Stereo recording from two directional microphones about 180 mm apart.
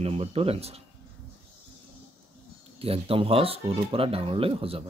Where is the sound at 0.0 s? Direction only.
35° right (ahead or behind).